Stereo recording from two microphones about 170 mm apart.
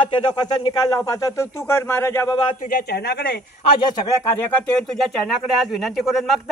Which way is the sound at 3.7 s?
25° left (ahead or behind).